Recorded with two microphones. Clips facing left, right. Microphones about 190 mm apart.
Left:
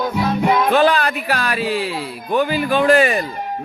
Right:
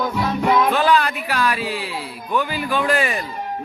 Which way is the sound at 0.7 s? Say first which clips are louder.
Left 3 dB; 70° left (ahead or behind).